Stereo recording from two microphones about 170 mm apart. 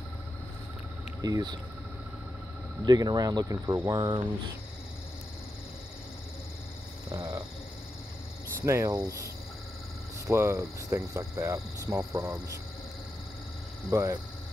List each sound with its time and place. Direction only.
1.2 s speech: 25° right (ahead or behind)
2.8 s speech: 25° right (ahead or behind)
7.1 s a sound: 20° right (ahead or behind)
8.6 s speech: 20° right (ahead or behind)
13.8 s speech: 20° right (ahead or behind)